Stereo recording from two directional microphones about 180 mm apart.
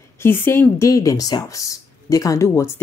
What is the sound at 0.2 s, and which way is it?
Speech, 10° left (ahead or behind).